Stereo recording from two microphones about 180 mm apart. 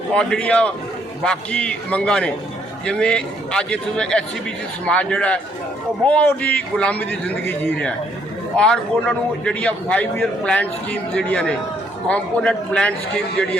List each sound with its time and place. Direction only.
0.1 s a man's voice: 5° left (ahead or behind)